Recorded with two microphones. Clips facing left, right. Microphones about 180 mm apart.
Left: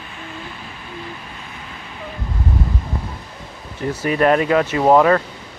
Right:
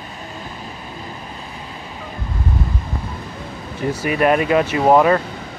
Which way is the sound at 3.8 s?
15° right (ahead or behind).